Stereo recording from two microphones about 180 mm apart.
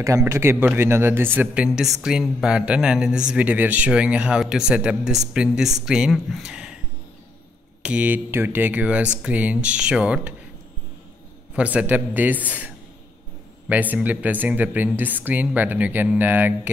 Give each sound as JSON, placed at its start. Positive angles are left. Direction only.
{"t": 0.0, "sound": "speech", "side_deg": -15}
{"t": 7.8, "sound": "speech", "side_deg": -5}
{"t": 11.5, "sound": "speech", "side_deg": -10}